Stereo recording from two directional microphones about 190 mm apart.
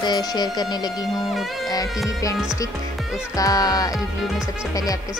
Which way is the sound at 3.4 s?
20° left (ahead or behind).